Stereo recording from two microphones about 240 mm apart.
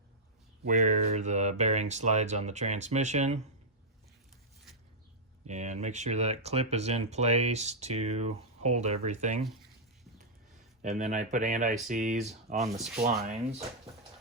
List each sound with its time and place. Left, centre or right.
0.6 s speech: right
5.5 s speech: right
10.8 s speech: right
12.7 s speech: centre
13.0 s speech: right